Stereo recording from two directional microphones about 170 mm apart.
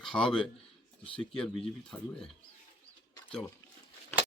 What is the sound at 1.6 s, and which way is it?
Speech, 5° left (ahead or behind).